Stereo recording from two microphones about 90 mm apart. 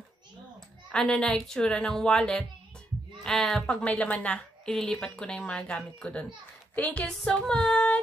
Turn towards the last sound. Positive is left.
turn(degrees=15)  # may be behind; listen again after turning